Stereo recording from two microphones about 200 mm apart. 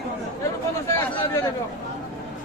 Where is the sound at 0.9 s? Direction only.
15° left (ahead or behind).